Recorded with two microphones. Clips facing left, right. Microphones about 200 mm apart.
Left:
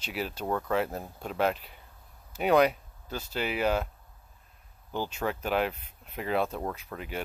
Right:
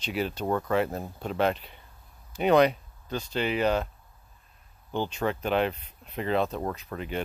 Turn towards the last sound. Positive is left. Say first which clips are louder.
# right 3 dB
turn(degrees=5)  # may be behind; listen again after turning